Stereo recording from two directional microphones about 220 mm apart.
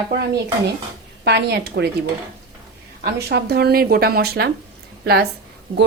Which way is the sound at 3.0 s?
45° right (ahead or behind).